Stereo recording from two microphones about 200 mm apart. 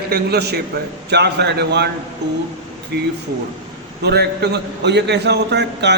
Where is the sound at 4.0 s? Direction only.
55° right (ahead or behind).